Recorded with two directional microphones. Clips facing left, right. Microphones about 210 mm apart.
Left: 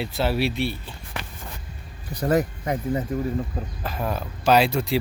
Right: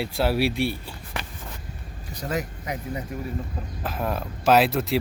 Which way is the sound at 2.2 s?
55° left (ahead or behind).